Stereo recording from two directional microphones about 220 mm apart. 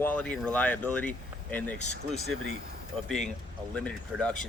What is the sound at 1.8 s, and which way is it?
Speech, 30° left (ahead or behind).